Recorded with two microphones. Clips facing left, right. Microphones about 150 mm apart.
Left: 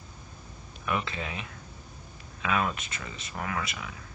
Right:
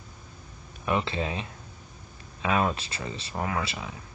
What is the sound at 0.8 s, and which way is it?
Speech, 30° right (ahead or behind).